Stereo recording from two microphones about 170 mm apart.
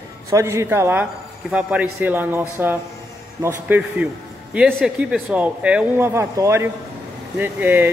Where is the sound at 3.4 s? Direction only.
10° right (ahead or behind).